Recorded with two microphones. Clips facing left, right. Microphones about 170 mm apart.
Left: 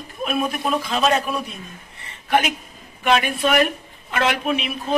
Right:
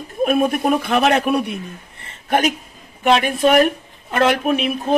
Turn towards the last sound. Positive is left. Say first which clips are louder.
# right 5 dB
turn(degrees=-45)  # may be behind; listen again after turning